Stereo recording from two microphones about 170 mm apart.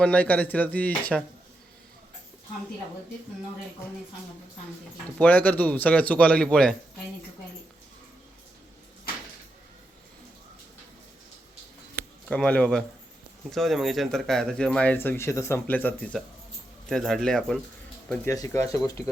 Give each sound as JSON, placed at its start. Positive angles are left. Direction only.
{"t": 0.0, "sound": "speech", "side_deg": 10}
{"t": 5.2, "sound": "speech", "side_deg": 10}
{"t": 12.3, "sound": "speech", "side_deg": 5}
{"t": 18.1, "sound": "speech", "side_deg": 15}